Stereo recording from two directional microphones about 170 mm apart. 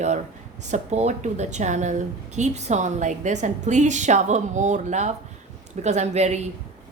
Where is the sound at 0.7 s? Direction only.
40° right (ahead or behind).